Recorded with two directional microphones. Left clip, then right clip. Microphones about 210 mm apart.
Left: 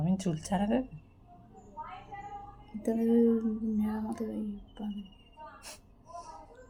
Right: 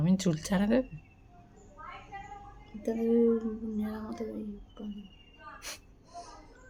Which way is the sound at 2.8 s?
Centre (ahead or behind).